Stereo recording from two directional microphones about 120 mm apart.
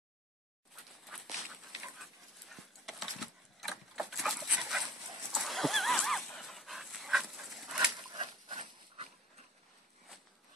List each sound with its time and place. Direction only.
1.0 s a sound: centre (ahead or behind)
5.3 s dog: centre (ahead or behind)
8.2 s dog: 50° right (ahead or behind)